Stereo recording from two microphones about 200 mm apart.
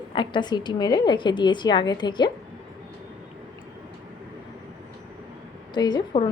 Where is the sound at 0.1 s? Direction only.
25° left (ahead or behind).